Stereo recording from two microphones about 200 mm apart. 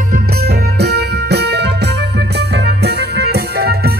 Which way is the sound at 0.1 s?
50° right (ahead or behind).